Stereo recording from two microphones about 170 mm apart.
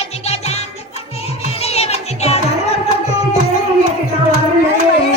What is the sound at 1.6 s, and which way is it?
Music, 35° left (ahead or behind).